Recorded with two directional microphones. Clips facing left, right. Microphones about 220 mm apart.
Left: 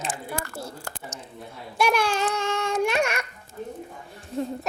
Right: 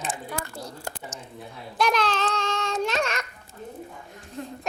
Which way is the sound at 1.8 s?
10° left (ahead or behind).